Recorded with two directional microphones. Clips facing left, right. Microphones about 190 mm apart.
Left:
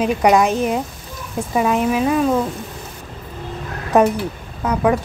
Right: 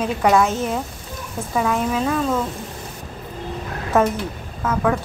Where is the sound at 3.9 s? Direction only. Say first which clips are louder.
Left 4 dB; 15° left (ahead or behind).